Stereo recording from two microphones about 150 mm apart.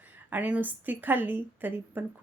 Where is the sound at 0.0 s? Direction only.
10° right (ahead or behind).